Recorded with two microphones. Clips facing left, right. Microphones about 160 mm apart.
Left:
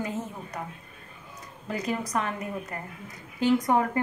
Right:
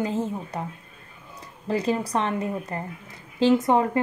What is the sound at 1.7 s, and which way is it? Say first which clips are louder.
A woman's voice: right 6 dB; 30° right (ahead or behind).